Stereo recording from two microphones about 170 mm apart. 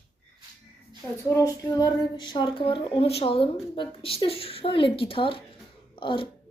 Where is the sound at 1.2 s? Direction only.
15° left (ahead or behind).